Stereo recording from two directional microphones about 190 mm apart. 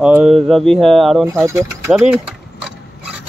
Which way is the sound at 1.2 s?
15° right (ahead or behind).